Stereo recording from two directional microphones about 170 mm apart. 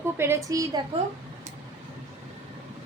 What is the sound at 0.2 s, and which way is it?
Speech, 15° right (ahead or behind).